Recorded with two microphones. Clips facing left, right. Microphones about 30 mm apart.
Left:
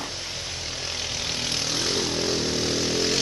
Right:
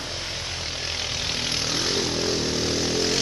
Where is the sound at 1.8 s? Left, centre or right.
Centre.